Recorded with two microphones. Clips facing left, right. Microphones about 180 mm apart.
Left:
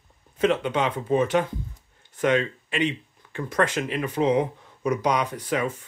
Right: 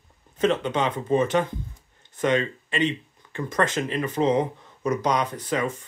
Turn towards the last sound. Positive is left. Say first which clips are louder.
# even
turn(degrees=10)  # may be behind; listen again after turning